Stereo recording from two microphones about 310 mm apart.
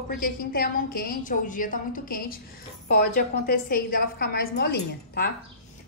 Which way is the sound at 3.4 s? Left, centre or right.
Left.